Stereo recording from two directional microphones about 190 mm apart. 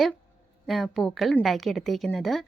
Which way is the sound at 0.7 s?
Centre (ahead or behind).